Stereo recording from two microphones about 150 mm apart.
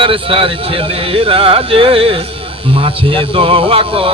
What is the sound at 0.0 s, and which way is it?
Speech, 35° right (ahead or behind).